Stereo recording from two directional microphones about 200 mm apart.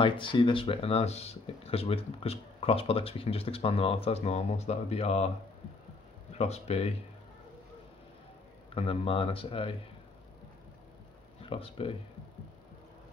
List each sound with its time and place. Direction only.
0.0 s speech: 25° left (ahead or behind)
6.3 s speech: 30° left (ahead or behind)
8.7 s speech: 25° left (ahead or behind)
11.4 s speech: 30° left (ahead or behind)